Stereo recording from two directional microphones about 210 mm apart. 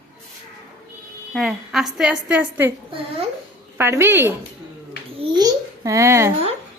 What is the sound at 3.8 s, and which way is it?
A child's voice, 10° right (ahead or behind).